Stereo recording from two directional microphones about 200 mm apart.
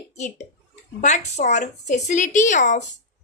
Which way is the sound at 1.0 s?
35° left (ahead or behind).